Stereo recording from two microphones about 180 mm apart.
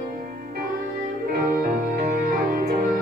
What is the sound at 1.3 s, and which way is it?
Music, 55° right (ahead or behind).